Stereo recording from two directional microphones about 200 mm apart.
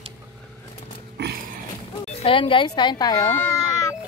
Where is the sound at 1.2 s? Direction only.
60° right (ahead or behind).